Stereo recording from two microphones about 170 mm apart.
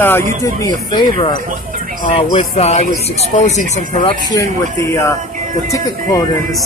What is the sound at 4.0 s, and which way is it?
Speech, 30° left (ahead or behind).